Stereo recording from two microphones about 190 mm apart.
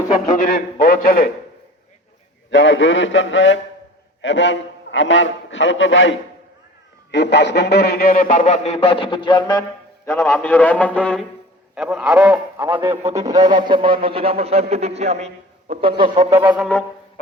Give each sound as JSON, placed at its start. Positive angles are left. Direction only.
{"t": 0.3, "sound": "speech", "side_deg": 45}
{"t": 2.5, "sound": "a man's voice", "side_deg": 80}
{"t": 7.1, "sound": "a man's voice", "side_deg": 65}